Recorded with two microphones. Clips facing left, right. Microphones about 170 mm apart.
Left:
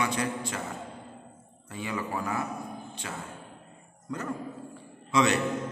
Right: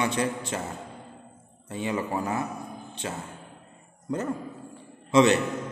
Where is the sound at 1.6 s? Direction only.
25° right (ahead or behind).